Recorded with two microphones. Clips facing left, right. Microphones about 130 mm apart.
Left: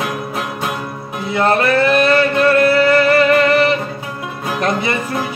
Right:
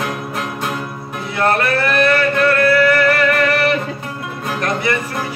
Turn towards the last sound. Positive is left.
turn(degrees=20)  # may be behind; listen again after turning